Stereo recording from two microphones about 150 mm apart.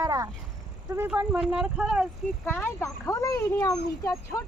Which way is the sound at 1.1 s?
5° right (ahead or behind).